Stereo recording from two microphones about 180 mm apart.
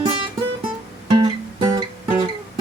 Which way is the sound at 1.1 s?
25° right (ahead or behind).